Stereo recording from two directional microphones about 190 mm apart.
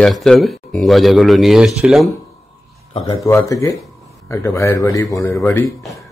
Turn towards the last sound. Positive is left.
turn(degrees=15)  # may be behind; listen again after turning